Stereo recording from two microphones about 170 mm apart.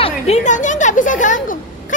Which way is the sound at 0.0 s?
45° left (ahead or behind).